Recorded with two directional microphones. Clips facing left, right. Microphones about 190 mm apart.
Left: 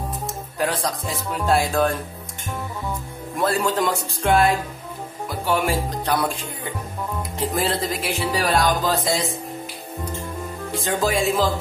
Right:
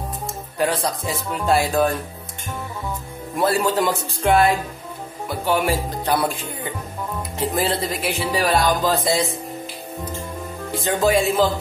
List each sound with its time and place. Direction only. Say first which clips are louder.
0.6 s speech: right 2 dB; centre (ahead or behind)
3.3 s speech: right 2 dB; 5° right (ahead or behind)
7.5 s speech: right 1 dB; centre (ahead or behind)
10.7 s speech: right 4 dB; centre (ahead or behind)